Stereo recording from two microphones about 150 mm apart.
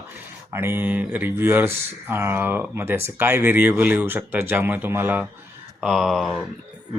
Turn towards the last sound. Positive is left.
turn(degrees=0)  # may be behind; listen again after turning